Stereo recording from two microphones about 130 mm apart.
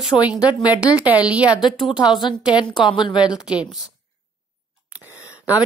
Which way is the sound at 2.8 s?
35° left (ahead or behind).